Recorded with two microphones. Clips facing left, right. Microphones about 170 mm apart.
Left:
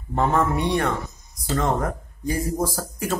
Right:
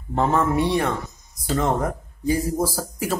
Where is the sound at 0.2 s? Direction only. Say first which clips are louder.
Right 1 dB; 5° right (ahead or behind).